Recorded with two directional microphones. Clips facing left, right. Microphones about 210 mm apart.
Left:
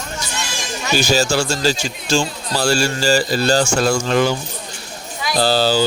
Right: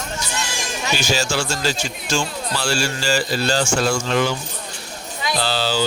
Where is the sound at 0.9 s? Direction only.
40° left (ahead or behind).